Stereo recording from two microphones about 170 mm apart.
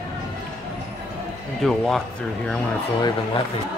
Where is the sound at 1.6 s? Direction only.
Centre (ahead or behind).